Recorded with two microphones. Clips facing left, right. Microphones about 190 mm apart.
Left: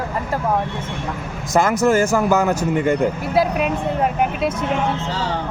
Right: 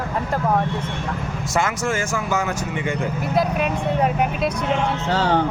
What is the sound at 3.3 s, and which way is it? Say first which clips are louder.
Speech: left 1 dB; 5° left (ahead or behind).